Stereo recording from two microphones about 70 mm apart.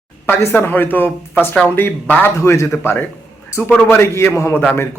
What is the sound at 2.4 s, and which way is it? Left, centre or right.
A man's voice, left.